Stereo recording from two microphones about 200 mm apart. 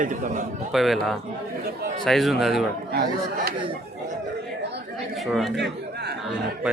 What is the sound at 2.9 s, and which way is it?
Speech, 50° right (ahead or behind).